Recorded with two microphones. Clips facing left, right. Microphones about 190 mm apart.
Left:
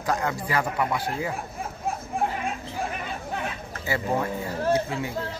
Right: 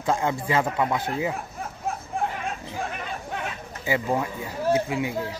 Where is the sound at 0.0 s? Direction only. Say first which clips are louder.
Right 2 dB; 25° right (ahead or behind).